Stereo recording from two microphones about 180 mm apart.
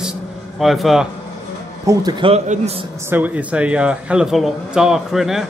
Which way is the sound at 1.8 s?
20° right (ahead or behind).